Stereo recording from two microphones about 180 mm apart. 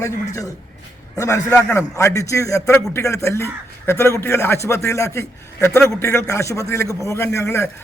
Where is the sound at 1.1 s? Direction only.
15° left (ahead or behind).